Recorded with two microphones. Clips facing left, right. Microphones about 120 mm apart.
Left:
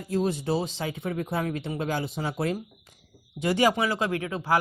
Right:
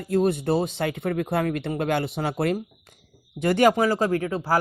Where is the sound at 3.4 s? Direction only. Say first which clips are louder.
Right 4 dB; 55° right (ahead or behind).